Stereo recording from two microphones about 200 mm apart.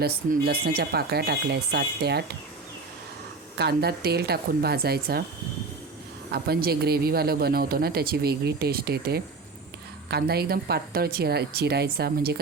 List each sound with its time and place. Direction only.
0.0 s speech: 50° right (ahead or behind)
3.6 s speech: 55° right (ahead or behind)
6.3 s speech: 50° right (ahead or behind)